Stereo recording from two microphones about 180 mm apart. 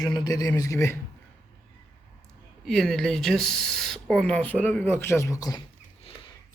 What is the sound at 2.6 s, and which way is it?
A man's voice, centre (ahead or behind).